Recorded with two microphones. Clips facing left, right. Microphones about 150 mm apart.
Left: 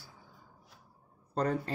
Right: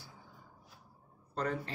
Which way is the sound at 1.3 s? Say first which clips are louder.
Left 5 dB; 40° left (ahead or behind).